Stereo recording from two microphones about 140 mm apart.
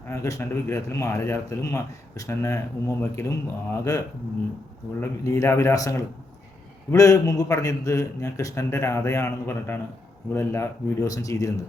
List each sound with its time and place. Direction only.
0.1 s a man's voice: 20° left (ahead or behind)